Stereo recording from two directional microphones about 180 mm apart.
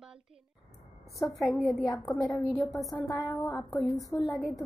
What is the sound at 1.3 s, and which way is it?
Speech, centre (ahead or behind).